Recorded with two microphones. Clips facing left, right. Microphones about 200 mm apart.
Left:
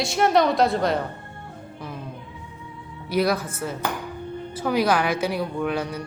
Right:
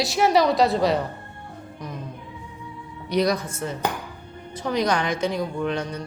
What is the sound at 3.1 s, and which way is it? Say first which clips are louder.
Speech: even; 5° left (ahead or behind).